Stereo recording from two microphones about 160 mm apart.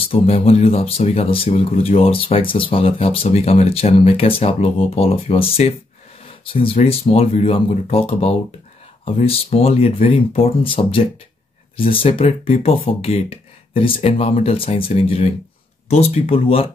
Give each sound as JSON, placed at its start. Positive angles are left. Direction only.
{"t": 0.1, "sound": "speech", "side_deg": 40}